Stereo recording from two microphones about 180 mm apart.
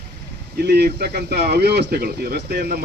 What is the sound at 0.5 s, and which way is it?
Speech, 65° right (ahead or behind).